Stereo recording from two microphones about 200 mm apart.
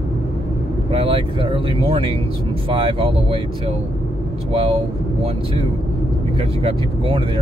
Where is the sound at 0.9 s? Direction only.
25° right (ahead or behind).